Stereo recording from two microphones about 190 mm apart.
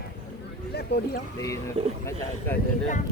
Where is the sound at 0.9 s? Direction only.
60° left (ahead or behind).